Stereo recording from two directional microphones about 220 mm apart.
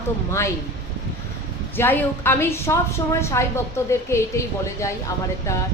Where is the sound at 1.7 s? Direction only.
10° left (ahead or behind).